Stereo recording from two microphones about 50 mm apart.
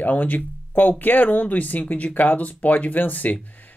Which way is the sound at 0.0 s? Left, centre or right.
Left.